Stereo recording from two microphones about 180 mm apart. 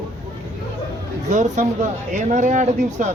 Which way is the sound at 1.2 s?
40° right (ahead or behind).